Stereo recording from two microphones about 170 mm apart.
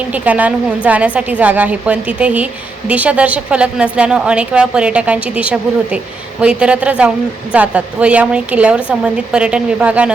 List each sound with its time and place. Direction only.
0.1 s a woman's voice: 10° right (ahead or behind)